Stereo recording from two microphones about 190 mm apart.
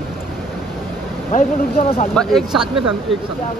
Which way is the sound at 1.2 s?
30° left (ahead or behind).